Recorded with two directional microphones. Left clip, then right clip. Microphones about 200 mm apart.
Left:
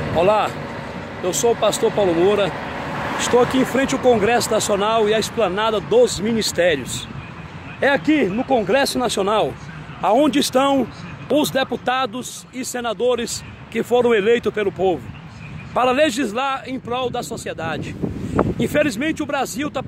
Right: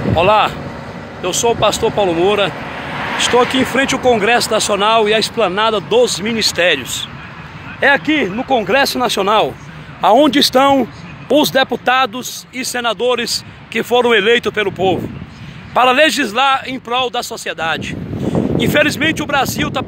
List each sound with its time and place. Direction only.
0.1 s speech: 5° left (ahead or behind); by 5.3 s 20° right (ahead or behind)
5.4 s speech: 30° right (ahead or behind)
6.0 s speech: 15° left (ahead or behind)
8.5 s speech: 5° right (ahead or behind)
10.0 s speech: 25° right (ahead or behind); by 19.8 s centre (ahead or behind)